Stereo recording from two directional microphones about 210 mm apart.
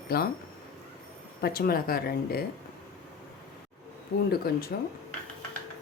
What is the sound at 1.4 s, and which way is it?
Speech, 45° left (ahead or behind).